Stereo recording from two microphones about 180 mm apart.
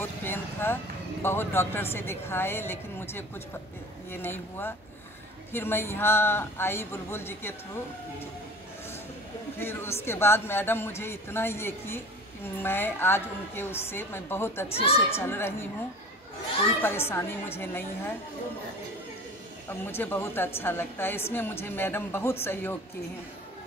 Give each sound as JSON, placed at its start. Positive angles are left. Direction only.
{"t": 0.0, "sound": "vehicle", "side_deg": 10}
{"t": 1.2, "sound": "a woman's voice", "side_deg": 15}
{"t": 9.6, "sound": "a woman's voice", "side_deg": 15}
{"t": 14.7, "sound": "speech", "side_deg": 35}
{"t": 15.0, "sound": "a woman's voice", "side_deg": 15}
{"t": 16.8, "sound": "a woman's voice", "side_deg": 15}
{"t": 19.7, "sound": "a woman's voice", "side_deg": 10}